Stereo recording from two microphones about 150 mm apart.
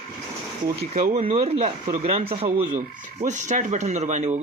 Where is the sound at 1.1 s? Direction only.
40° right (ahead or behind).